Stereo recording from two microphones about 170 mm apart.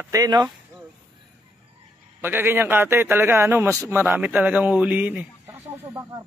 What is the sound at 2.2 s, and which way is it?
A man's voice, 10° right (ahead or behind).